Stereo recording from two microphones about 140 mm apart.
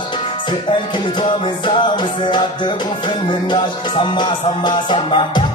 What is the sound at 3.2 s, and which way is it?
Music, 35° left (ahead or behind).